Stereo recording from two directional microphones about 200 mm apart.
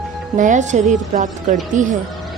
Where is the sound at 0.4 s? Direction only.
35° right (ahead or behind).